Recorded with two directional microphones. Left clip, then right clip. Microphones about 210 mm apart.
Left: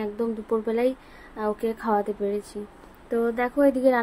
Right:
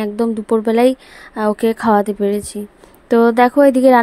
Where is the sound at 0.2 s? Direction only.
45° right (ahead or behind).